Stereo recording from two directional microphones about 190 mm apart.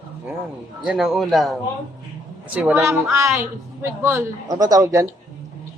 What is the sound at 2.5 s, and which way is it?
A woman's voice, 10° right (ahead or behind).